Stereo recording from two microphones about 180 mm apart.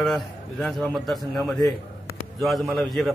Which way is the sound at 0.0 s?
Centre (ahead or behind).